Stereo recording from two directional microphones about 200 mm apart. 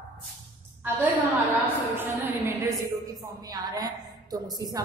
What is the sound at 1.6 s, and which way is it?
A woman's voice, 10° right (ahead or behind).